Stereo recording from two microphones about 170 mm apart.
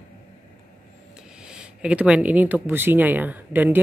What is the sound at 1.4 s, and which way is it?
Speech, 5° right (ahead or behind).